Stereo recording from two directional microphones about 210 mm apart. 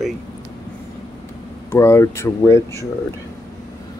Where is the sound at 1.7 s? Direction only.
15° left (ahead or behind).